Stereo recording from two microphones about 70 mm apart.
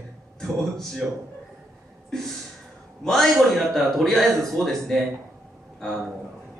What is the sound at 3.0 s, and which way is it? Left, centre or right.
A man's voice, centre.